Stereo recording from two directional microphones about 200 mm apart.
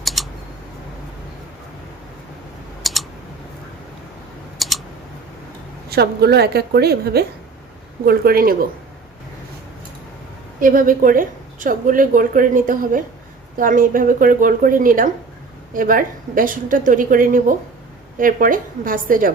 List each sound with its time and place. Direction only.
0.0 s a sound: centre (ahead or behind)
2.8 s typing: centre (ahead or behind)
4.6 s typing: centre (ahead or behind)
5.9 s a woman's voice: 55° right (ahead or behind)
10.6 s a woman's voice: 45° right (ahead or behind)